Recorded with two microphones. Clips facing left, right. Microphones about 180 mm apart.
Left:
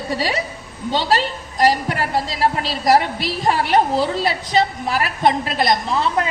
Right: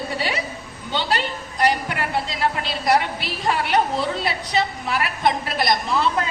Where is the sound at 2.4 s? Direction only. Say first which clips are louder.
Left 4 dB; 35° left (ahead or behind).